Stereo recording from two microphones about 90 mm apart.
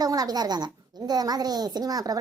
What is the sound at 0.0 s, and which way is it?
A child's voice, 45° right (ahead or behind).